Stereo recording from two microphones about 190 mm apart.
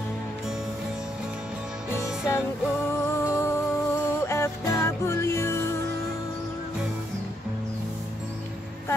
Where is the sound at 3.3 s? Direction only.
15° left (ahead or behind).